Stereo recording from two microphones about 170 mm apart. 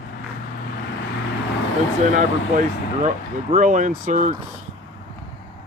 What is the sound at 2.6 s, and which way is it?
Speech, 50° right (ahead or behind).